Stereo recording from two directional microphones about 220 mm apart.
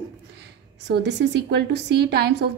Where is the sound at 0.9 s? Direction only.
50° right (ahead or behind).